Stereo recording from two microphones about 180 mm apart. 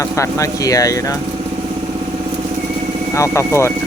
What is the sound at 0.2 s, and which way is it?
Speech, 20° left (ahead or behind).